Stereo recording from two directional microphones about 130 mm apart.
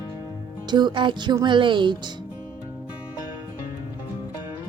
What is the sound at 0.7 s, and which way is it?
A child's voice, 35° right (ahead or behind).